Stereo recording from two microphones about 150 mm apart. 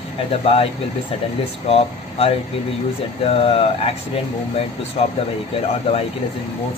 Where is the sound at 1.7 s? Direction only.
40° left (ahead or behind).